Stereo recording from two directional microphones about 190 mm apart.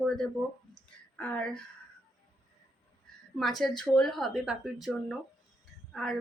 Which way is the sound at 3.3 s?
Centre (ahead or behind).